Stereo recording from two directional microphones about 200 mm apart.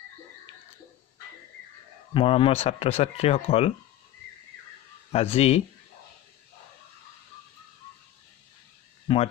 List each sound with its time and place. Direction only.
2.1 s speech: 25° left (ahead or behind)
5.1 s speech: 30° left (ahead or behind)
9.0 s a sound: 25° left (ahead or behind)